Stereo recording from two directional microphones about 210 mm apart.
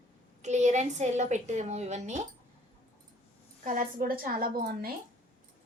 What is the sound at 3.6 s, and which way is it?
A woman's voice, 40° right (ahead or behind).